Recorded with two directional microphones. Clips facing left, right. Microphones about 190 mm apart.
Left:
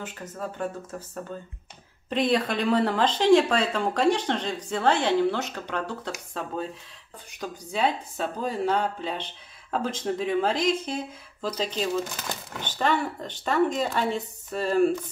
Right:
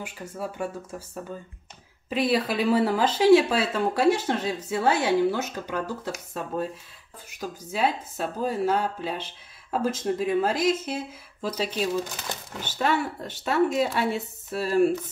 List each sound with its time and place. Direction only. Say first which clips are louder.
0.0 s speech: right 1 dB; 10° right (ahead or behind)